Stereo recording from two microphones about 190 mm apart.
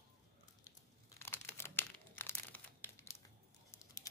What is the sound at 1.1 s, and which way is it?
Crumpling, 15° left (ahead or behind).